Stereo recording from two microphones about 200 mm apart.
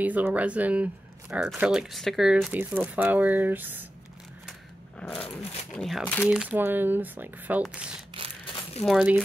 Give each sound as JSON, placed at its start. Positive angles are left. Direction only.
{"t": 0.0, "sound": "speech", "side_deg": -10}
{"t": 5.0, "sound": "speech", "side_deg": 0}
{"t": 8.1, "sound": "a sound", "side_deg": -25}
{"t": 8.8, "sound": "speech", "side_deg": -5}